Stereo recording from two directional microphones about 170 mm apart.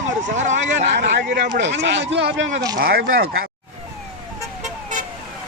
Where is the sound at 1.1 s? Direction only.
90° right.